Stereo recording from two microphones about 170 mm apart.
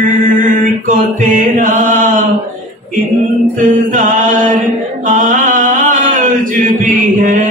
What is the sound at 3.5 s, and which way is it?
Chant, 50° right (ahead or behind).